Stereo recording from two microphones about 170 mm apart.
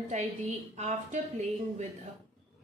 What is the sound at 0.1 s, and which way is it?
A woman's voice, 45° right (ahead or behind).